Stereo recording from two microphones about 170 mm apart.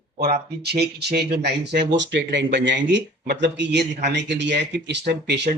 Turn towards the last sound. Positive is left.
turn(degrees=-90)